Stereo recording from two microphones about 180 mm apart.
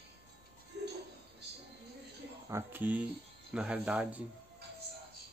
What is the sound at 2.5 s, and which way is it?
Speech, 15° right (ahead or behind).